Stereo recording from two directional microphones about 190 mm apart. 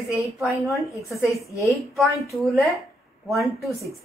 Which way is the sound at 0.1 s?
Centre (ahead or behind).